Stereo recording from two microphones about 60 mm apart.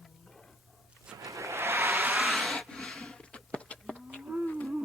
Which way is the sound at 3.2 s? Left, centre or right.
Centre.